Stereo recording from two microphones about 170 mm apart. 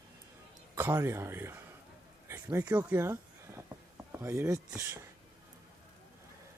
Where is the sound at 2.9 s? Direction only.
15° right (ahead or behind).